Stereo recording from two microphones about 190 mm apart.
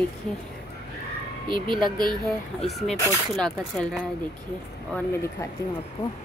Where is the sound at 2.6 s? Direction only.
Centre (ahead or behind).